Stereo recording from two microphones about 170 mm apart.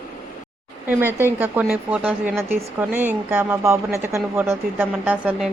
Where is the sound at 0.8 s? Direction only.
15° right (ahead or behind).